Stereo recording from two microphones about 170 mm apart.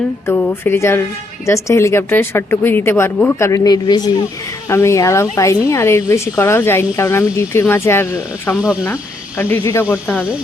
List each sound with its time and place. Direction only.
0.3 s speech: 15° left (ahead or behind)
10.1 s speech: 5° right (ahead or behind)